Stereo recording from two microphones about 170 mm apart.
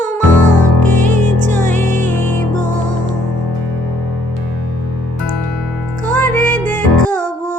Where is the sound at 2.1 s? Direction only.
10° left (ahead or behind).